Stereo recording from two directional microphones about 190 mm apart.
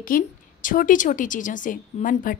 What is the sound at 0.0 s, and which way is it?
A woman's voice, 45° left (ahead or behind).